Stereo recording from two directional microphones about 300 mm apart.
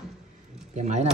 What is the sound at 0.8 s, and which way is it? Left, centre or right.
Speech, right.